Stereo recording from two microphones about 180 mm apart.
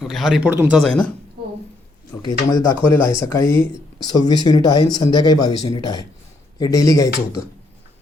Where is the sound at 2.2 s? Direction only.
20° left (ahead or behind).